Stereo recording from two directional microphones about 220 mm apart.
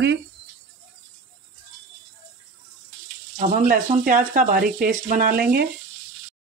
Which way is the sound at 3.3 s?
35° right (ahead or behind).